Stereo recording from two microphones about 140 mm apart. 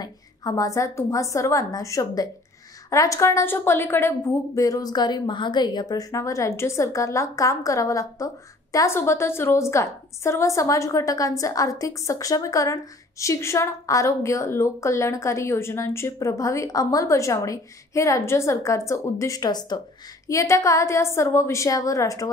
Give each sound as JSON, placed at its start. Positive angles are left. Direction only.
{"t": 0.0, "sound": "a woman's voice", "side_deg": 25}